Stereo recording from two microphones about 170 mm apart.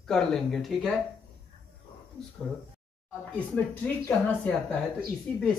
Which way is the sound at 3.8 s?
5° left (ahead or behind).